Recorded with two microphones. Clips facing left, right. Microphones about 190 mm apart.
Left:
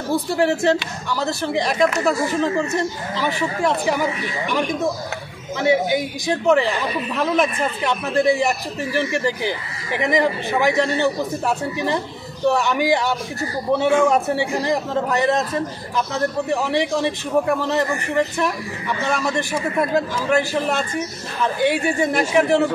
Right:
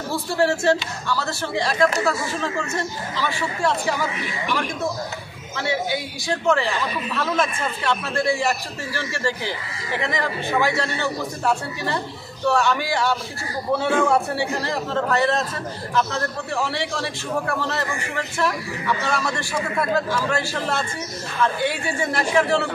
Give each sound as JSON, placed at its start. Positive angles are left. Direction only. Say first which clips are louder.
{"t": 0.1, "sound": "a man's voice", "louder": "left 3 dB", "side_deg": 15}
{"t": 5.6, "sound": "a man's voice", "louder": "left 7 dB", "side_deg": 15}